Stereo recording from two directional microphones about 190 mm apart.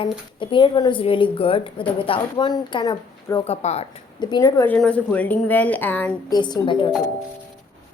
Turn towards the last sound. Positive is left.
turn(degrees=25)  # may be behind; listen again after turning